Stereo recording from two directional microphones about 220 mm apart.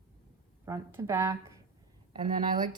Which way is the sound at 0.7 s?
15° right (ahead or behind).